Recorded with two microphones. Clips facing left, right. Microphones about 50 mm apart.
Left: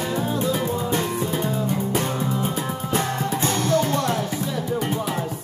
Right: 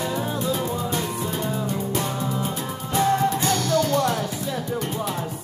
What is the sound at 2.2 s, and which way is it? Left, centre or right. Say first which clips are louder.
Music: left 2 dB; centre.